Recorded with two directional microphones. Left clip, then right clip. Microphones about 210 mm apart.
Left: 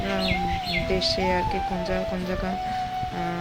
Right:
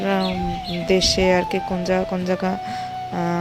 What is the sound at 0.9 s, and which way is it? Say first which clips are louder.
Speech: right 9 dB; 35° right (ahead or behind).